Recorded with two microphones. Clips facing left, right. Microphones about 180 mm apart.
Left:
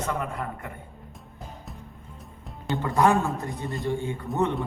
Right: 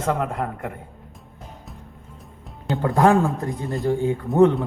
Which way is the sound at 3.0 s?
90° right.